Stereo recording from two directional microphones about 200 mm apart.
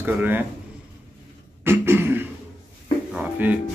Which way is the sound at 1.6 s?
10° right (ahead or behind).